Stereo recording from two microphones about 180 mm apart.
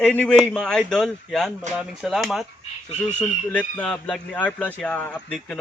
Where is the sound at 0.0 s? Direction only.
5° left (ahead or behind).